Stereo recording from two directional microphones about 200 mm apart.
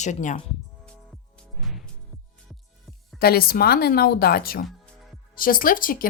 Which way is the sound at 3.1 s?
50° left (ahead or behind).